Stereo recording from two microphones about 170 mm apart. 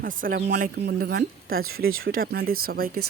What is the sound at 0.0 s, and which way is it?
Speech, 55° right (ahead or behind).